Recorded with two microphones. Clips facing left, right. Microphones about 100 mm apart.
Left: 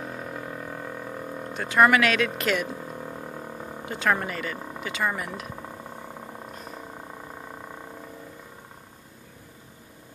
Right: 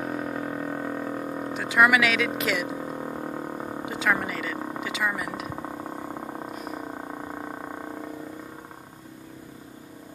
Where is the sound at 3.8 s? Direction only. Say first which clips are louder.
Left 1 dB; 5° right (ahead or behind).